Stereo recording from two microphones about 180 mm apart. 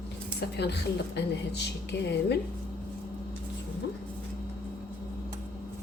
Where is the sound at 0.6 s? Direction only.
70° left (ahead or behind).